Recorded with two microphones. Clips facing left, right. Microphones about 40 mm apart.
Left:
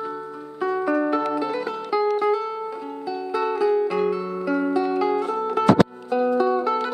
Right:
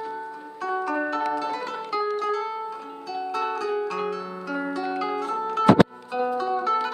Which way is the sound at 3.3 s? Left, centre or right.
Centre.